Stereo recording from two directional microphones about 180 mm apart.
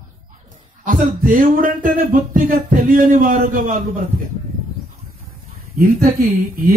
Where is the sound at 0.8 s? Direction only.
50° right (ahead or behind).